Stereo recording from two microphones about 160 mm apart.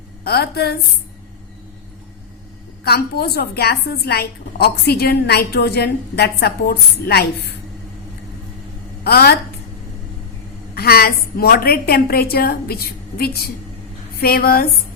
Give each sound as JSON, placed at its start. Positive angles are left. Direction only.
{"t": 0.3, "sound": "a woman's voice", "side_deg": 85}
{"t": 2.8, "sound": "a woman's voice", "side_deg": 80}
{"t": 9.0, "sound": "a woman's voice", "side_deg": 80}
{"t": 10.8, "sound": "a woman's voice", "side_deg": 75}